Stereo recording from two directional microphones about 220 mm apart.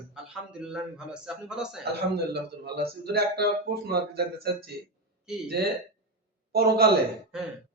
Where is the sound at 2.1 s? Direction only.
50° right (ahead or behind).